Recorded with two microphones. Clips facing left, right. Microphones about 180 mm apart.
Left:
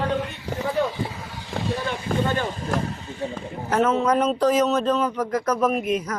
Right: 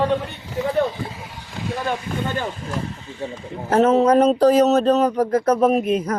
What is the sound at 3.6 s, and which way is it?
A man's voice, 30° right (ahead or behind).